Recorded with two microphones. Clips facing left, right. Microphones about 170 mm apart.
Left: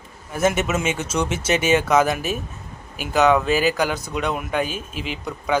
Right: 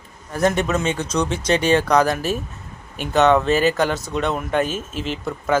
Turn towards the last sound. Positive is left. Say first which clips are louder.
# right 3 dB
turn(degrees=0)  # may be behind; listen again after turning